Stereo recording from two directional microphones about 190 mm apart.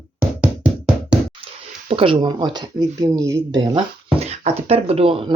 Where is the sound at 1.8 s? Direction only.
30° right (ahead or behind).